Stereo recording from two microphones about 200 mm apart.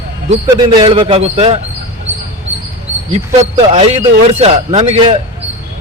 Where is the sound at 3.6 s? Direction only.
30° right (ahead or behind).